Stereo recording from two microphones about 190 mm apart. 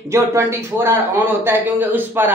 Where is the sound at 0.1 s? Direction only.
15° right (ahead or behind).